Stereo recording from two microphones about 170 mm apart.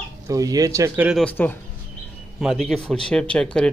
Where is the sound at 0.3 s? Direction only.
20° right (ahead or behind).